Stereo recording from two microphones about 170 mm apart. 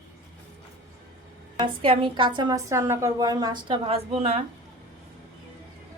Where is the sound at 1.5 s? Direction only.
30° right (ahead or behind).